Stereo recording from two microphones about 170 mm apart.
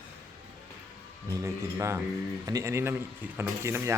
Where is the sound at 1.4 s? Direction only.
15° right (ahead or behind).